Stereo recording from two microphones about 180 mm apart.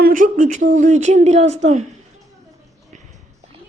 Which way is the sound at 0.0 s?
50° right (ahead or behind).